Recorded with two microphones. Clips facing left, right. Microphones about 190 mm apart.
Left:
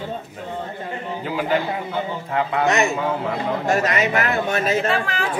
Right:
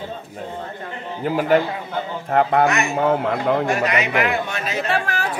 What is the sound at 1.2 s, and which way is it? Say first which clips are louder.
Speech: right 5 dB; 50° right (ahead or behind).